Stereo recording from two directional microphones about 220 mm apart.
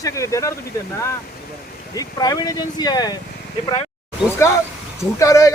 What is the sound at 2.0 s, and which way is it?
A man's voice, 15° left (ahead or behind).